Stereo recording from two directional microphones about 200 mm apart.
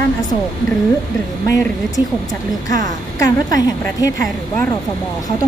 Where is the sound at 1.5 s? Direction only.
15° left (ahead or behind).